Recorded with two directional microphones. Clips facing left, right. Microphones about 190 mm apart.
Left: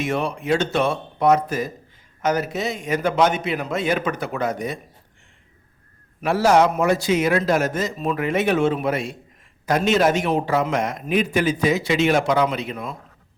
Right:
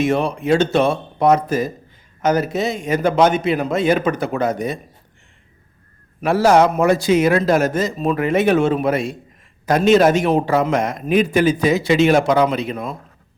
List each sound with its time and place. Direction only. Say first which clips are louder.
0.0 s a man's voice: right 6 dB; 30° right (ahead or behind)
6.2 s a man's voice: right 3 dB; 40° right (ahead or behind)